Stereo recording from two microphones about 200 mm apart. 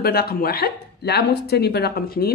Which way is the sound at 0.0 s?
50° left (ahead or behind).